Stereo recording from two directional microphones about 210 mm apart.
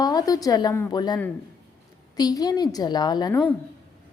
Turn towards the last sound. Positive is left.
turn(degrees=20)  # may be behind; listen again after turning